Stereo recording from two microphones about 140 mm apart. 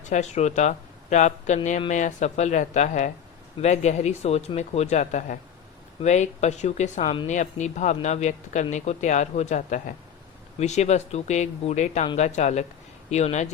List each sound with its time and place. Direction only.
0.1 s speech: 55° left (ahead or behind)